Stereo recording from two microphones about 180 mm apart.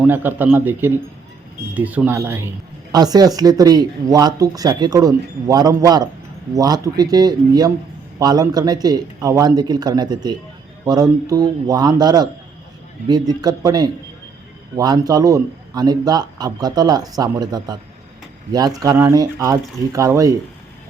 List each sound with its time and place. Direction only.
0.0 s a man's voice: 10° right (ahead or behind)